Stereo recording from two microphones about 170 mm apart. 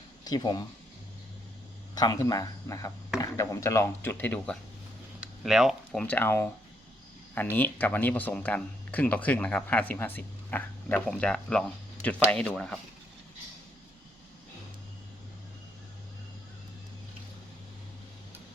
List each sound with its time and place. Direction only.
0.3 s speech: 25° left (ahead or behind)
2.0 s speech: 20° left (ahead or behind)
5.2 s speech: centre (ahead or behind)
7.5 s speech: 10° left (ahead or behind)